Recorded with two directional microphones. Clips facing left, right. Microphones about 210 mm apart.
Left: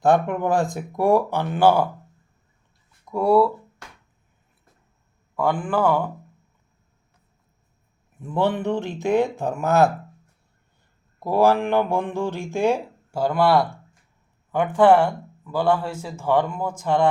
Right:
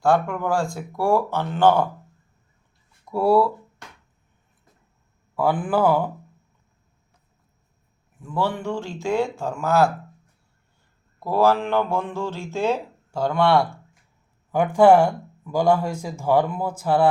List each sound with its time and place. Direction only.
0.0 s speech: 20° left (ahead or behind)
3.0 s speech: 5° right (ahead or behind)
5.4 s speech: 5° right (ahead or behind)
8.2 s speech: 20° left (ahead or behind)
11.2 s speech: 15° left (ahead or behind)
14.8 s speech: 10° right (ahead or behind)